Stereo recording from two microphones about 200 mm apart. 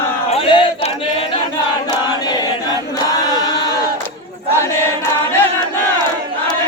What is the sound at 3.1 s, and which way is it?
Crowd, 20° left (ahead or behind).